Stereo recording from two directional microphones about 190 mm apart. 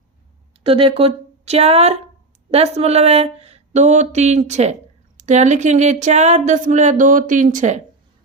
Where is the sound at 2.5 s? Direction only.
35° right (ahead or behind).